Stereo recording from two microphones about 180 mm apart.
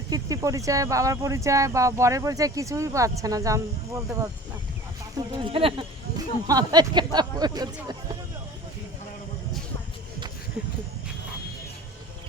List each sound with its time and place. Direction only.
0.1 s speech: 20° right (ahead or behind)
5.1 s speech: 30° right (ahead or behind)